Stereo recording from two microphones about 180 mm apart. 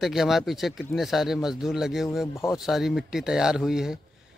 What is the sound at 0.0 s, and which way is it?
A man's voice, centre (ahead or behind).